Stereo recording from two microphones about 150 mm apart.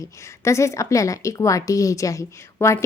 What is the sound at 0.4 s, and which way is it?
A woman's voice, 20° left (ahead or behind).